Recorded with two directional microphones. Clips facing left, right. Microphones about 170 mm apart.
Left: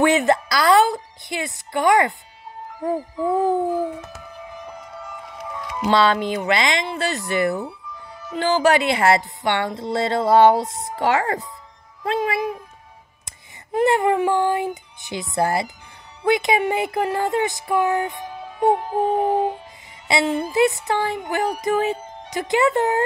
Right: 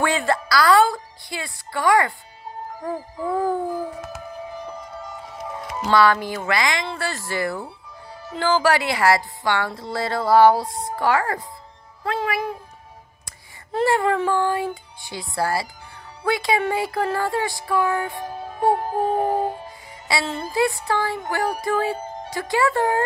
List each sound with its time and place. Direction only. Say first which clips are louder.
0.0 s a woman's voice: left 5 dB; 20° left (ahead or behind)
4.6 s music: right 2 dB; 35° right (ahead or behind)
5.9 s a woman's voice: even; 20° left (ahead or behind)
13.7 s a woman's voice: left 2 dB; 15° left (ahead or behind)
18.2 s music: left 1 dB; 40° right (ahead or behind)
20.1 s a woman's voice: left 5 dB; 20° left (ahead or behind)